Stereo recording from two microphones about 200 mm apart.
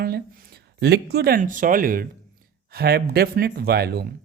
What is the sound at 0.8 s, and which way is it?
Speech, 55° right (ahead or behind).